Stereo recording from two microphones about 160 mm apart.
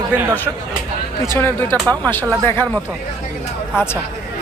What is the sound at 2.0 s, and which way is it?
Speech, 15° left (ahead or behind).